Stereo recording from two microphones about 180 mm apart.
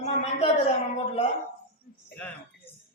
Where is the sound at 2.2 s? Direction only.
10° left (ahead or behind).